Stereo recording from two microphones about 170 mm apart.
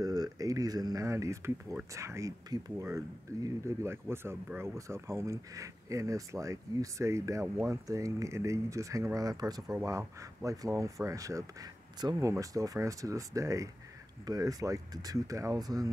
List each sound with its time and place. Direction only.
0.0 s speech: 20° right (ahead or behind)